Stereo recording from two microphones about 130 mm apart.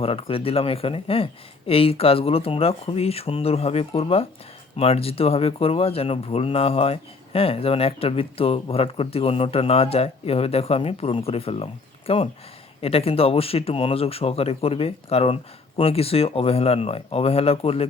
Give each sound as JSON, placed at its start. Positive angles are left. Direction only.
{"t": 0.0, "sound": "speech", "side_deg": 45}